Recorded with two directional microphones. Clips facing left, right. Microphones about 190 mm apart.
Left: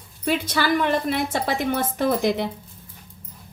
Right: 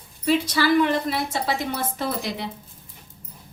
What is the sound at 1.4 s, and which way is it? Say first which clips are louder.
Speech: left 3 dB; 50° left (ahead or behind).